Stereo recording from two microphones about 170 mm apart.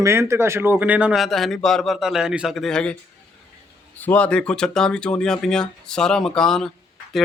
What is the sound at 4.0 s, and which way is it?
Speech, 10° left (ahead or behind).